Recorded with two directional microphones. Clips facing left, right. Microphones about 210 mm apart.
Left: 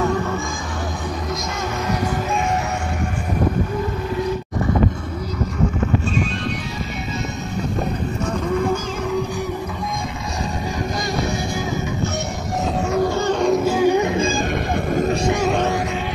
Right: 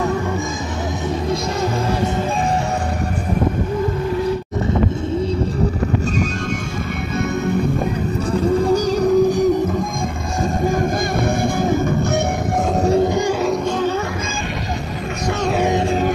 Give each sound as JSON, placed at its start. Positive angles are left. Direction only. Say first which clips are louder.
{"t": 8.3, "sound": "music", "louder": "right 5 dB", "side_deg": -35}
{"t": 13.0, "sound": "music", "louder": "right 1 dB", "side_deg": -15}
{"t": 13.7, "sound": "music", "louder": "left 3 dB", "side_deg": 10}